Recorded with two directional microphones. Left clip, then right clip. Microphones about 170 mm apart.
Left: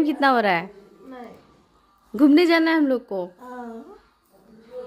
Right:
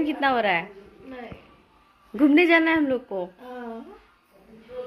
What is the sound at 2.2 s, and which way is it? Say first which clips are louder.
A woman's voice: left 1 dB; 45° left (ahead or behind).